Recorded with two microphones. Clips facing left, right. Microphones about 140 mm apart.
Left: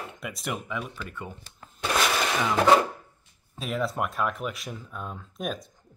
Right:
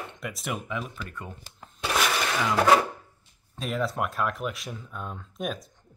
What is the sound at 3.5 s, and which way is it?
Speech, centre (ahead or behind).